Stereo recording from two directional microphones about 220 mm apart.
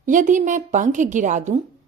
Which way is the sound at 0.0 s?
35° right (ahead or behind).